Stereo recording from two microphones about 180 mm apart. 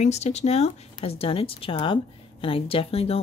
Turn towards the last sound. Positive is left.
turn(degrees=35)  # may be behind; listen again after turning